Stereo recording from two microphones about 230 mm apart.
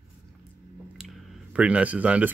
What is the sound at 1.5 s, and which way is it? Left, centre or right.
Speech, centre.